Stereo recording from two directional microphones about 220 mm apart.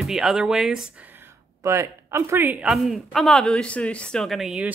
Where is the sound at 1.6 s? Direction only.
15° right (ahead or behind).